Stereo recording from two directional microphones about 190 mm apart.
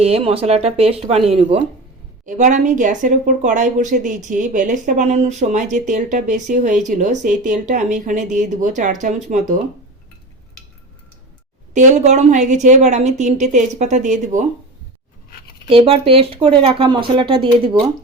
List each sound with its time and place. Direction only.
0.0 s speech: 30° right (ahead or behind)
2.2 s speech: 40° right (ahead or behind)
11.7 s speech: 40° right (ahead or behind)
15.6 s speech: 30° right (ahead or behind)